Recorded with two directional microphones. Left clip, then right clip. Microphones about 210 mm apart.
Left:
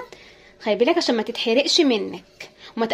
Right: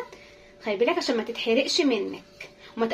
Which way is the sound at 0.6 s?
50° left (ahead or behind).